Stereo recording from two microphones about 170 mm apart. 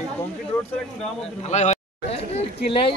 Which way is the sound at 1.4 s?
45° left (ahead or behind).